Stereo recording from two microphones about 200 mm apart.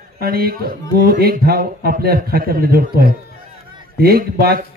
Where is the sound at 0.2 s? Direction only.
50° right (ahead or behind).